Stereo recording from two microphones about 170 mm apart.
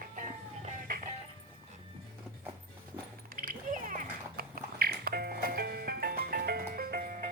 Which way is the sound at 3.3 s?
55° right (ahead or behind).